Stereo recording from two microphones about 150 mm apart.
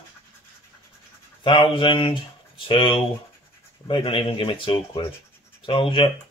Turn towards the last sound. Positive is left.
turn(degrees=35)  # may be behind; listen again after turning